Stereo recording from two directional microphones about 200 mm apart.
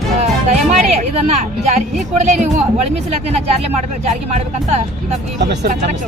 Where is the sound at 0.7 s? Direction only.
35° right (ahead or behind).